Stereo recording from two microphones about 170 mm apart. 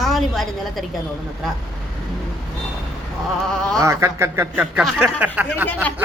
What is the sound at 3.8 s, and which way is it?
Speech, 15° right (ahead or behind).